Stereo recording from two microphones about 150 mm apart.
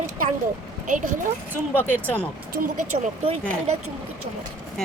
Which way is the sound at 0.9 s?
60° right (ahead or behind).